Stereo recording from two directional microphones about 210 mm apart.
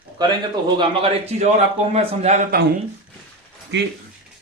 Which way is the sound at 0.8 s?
30° right (ahead or behind).